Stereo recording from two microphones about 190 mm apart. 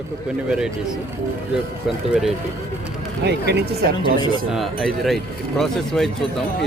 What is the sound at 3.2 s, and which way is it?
Speech, 60° right (ahead or behind).